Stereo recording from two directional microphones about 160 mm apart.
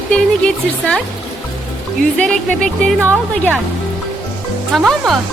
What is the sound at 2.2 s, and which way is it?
Speech, 5° left (ahead or behind).